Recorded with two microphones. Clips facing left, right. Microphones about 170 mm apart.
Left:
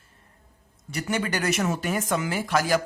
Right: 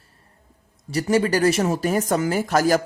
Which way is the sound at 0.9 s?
35° right (ahead or behind).